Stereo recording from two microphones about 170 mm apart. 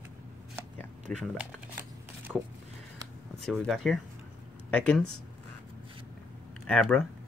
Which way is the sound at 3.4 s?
Centre (ahead or behind).